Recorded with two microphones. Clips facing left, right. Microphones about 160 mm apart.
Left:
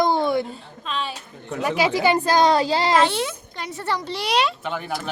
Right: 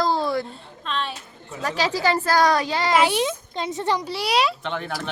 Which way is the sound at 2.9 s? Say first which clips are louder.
Even; 10° right (ahead or behind).